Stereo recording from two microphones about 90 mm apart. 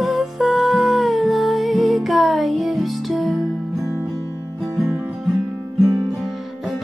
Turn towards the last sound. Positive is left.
turn(degrees=0)  # may be behind; listen again after turning